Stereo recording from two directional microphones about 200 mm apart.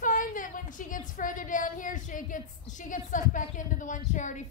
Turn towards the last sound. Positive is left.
turn(degrees=40)  # may be behind; listen again after turning